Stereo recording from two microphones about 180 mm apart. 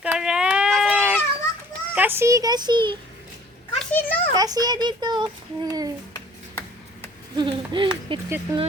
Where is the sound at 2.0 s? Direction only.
10° right (ahead or behind).